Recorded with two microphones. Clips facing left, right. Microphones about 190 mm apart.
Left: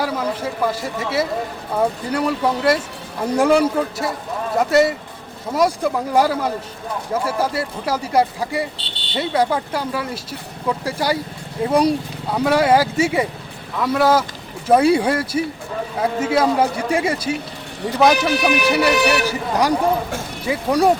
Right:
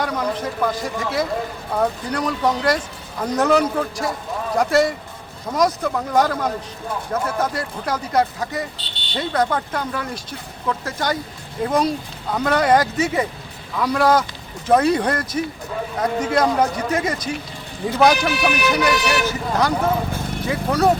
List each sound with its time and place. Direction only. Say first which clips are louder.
0.0 s speech: left 1 dB; 5° left (ahead or behind)